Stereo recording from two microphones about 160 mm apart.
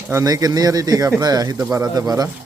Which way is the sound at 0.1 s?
20° right (ahead or behind).